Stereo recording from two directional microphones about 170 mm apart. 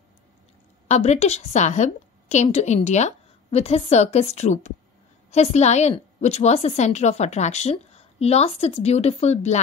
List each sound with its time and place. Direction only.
0.8 s a woman's voice: 40° left (ahead or behind)